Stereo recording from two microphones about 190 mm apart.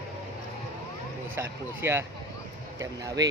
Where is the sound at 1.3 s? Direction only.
15° right (ahead or behind).